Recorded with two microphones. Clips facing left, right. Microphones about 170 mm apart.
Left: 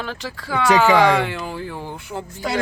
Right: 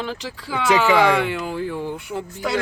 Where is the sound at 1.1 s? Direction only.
35° left (ahead or behind).